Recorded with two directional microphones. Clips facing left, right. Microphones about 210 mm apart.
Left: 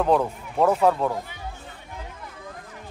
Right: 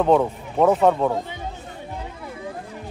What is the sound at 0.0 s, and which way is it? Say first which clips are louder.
Speech: right 3 dB; centre (ahead or behind).